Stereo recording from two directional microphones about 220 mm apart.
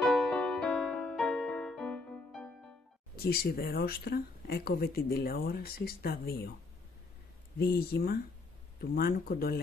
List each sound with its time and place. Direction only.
0.0 s music: 5° left (ahead or behind)
3.3 s speech: 45° left (ahead or behind)
7.5 s speech: 45° left (ahead or behind)